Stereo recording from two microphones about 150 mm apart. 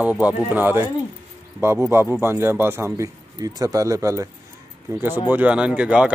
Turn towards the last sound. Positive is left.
turn(degrees=-10)  # may be behind; listen again after turning